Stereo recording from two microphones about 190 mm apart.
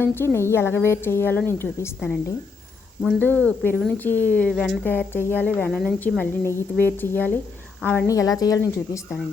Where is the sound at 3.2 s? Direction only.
10° left (ahead or behind).